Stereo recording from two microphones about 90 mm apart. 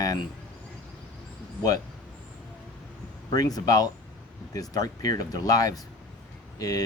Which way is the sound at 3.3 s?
45° left (ahead or behind).